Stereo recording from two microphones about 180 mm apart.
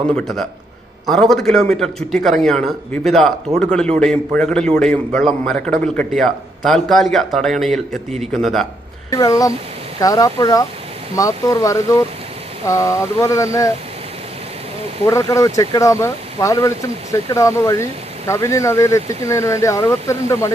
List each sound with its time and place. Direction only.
0.1 s a man's voice: 5° left (ahead or behind)
9.0 s speech: 20° left (ahead or behind)
15.0 s speech: 20° left (ahead or behind)